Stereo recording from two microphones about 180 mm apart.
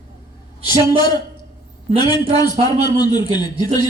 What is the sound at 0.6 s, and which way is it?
A man's voice, 25° left (ahead or behind).